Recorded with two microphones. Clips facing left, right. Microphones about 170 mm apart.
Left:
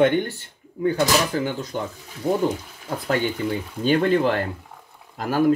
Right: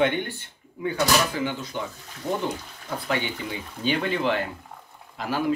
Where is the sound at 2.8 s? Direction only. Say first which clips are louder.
Left 5 dB; 50° left (ahead or behind).